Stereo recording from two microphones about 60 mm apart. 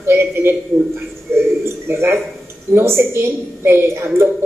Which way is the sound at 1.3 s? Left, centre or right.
Right.